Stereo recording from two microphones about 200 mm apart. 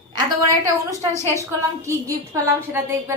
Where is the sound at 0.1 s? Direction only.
20° right (ahead or behind).